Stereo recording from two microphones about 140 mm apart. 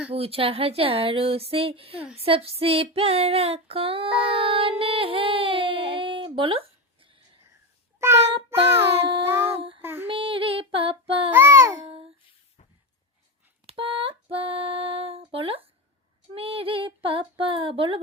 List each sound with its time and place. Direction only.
0.1 s speech: 45° right (ahead or behind)
2.1 s female singing: 45° right (ahead or behind)
7.9 s child singing: 20° right (ahead or behind)
9.6 s child singing: 40° right (ahead or behind)
9.8 s female singing: 15° right (ahead or behind)
10.1 s female singing: 40° right (ahead or behind)
11.3 s child singing: 15° right (ahead or behind)
13.7 s a sound: 40° right (ahead or behind)
16.3 s female singing: 40° right (ahead or behind)